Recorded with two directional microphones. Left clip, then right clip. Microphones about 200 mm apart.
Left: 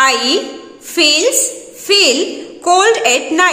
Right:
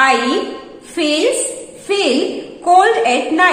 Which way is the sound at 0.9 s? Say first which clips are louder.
Left 4 dB; 40° left (ahead or behind).